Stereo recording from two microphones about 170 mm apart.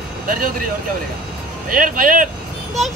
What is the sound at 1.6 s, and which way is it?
Music, 55° right (ahead or behind).